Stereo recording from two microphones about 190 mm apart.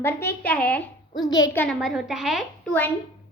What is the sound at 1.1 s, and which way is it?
Speech, 20° left (ahead or behind).